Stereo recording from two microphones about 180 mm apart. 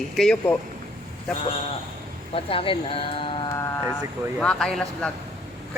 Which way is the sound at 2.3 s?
30° left (ahead or behind).